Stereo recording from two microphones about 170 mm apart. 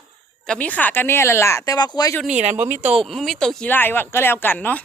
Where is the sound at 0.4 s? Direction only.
5° left (ahead or behind); by 2.1 s 25° left (ahead or behind).